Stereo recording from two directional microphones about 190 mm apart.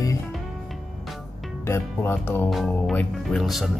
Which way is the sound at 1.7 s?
10° left (ahead or behind).